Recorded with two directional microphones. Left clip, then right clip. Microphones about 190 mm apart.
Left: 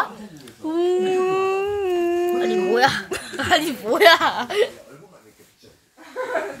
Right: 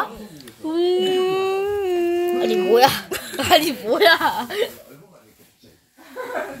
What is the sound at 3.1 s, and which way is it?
Speech, 10° left (ahead or behind).